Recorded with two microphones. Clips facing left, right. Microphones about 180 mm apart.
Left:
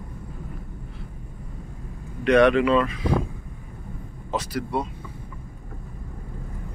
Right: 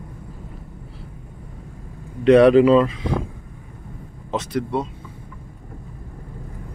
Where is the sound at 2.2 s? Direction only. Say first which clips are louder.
Right 6 dB; 30° right (ahead or behind).